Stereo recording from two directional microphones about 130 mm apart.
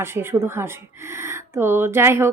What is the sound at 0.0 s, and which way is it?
Speech, 20° right (ahead or behind).